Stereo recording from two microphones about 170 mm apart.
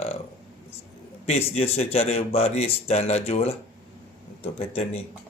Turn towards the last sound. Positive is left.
turn(degrees=35)  # may be behind; listen again after turning